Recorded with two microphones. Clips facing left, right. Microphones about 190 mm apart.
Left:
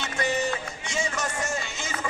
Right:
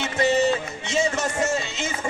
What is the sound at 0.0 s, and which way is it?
Music, 20° right (ahead or behind).